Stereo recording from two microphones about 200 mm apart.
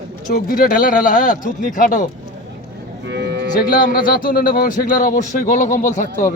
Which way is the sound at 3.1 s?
60° right (ahead or behind).